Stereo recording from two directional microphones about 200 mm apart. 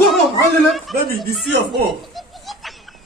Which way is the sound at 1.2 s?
Centre (ahead or behind).